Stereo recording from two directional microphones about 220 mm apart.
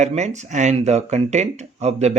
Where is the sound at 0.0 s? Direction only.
30° right (ahead or behind).